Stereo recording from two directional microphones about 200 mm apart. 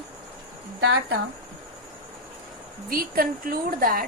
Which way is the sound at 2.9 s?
45° right (ahead or behind).